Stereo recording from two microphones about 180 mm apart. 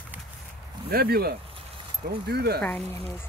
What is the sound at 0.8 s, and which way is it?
Speech, 60° right (ahead or behind).